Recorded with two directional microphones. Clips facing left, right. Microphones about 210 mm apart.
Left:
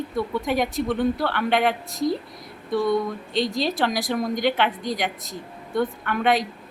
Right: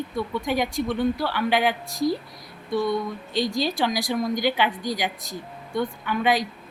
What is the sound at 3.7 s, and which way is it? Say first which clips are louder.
Speech: left 1 dB; centre (ahead or behind).